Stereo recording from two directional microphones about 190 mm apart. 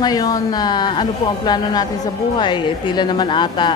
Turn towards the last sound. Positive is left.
turn(degrees=25)  # may be behind; listen again after turning